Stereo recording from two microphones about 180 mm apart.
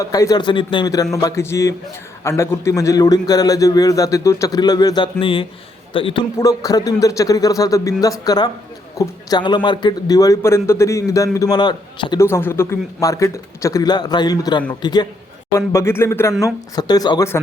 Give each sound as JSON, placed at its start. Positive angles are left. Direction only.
{"t": 0.0, "sound": "a man's voice", "side_deg": 20}
{"t": 12.2, "sound": "a man's voice", "side_deg": 15}